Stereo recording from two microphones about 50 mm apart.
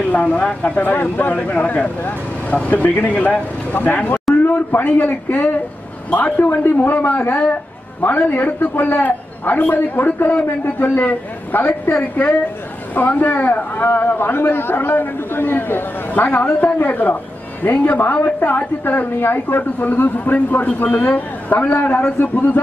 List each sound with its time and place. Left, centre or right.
0.1 s a man's voice: left
12.9 s a man's voice: left